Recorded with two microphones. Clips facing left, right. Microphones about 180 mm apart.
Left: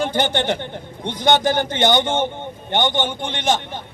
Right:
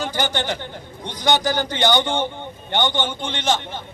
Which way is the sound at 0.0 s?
25° left (ahead or behind).